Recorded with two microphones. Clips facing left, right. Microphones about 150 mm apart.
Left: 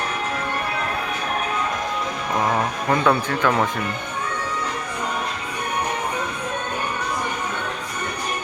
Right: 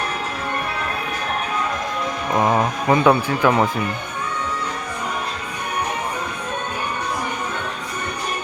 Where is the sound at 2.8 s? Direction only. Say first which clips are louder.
Right 4 dB; 15° right (ahead or behind).